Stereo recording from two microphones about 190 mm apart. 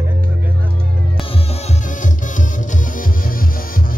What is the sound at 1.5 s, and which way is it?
Music, 40° left (ahead or behind).